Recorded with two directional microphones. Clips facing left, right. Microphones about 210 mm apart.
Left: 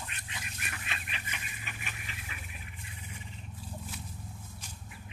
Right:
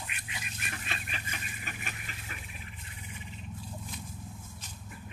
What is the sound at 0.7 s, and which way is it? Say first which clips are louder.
Goose: right 3 dB; 35° right (ahead or behind).